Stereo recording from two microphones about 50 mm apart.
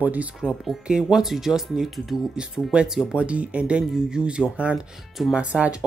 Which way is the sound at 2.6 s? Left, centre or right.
Left.